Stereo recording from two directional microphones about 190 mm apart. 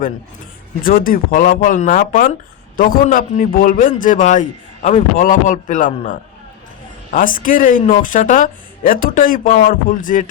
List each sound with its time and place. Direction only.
0.8 s a man's voice: 50° left (ahead or behind)